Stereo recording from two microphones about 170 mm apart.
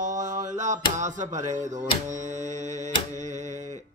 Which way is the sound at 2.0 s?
45° right (ahead or behind).